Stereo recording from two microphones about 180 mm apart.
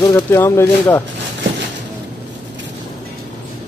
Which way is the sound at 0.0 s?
15° left (ahead or behind).